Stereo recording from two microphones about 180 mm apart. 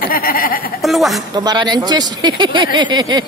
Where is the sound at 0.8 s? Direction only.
Centre (ahead or behind).